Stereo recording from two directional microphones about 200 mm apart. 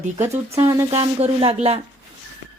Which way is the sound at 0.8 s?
30° right (ahead or behind).